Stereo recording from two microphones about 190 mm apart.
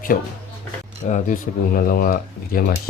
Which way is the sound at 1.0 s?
40° left (ahead or behind).